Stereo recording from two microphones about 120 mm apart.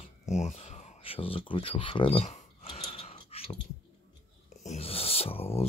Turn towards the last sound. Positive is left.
turn(degrees=55)  # may be behind; listen again after turning